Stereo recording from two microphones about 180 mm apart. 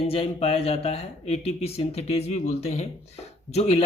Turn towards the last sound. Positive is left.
turn(degrees=35)  # may be behind; listen again after turning